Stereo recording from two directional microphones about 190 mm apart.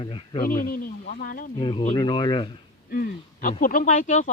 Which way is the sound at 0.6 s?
50° left (ahead or behind).